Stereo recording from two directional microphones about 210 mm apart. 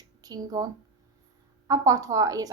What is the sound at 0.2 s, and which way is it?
A woman's voice, 15° right (ahead or behind).